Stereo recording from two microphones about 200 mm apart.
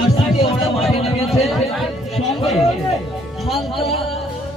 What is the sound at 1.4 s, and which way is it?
Speech, centre (ahead or behind).